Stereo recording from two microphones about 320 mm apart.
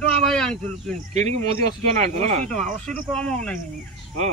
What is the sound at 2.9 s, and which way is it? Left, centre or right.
Speech, centre.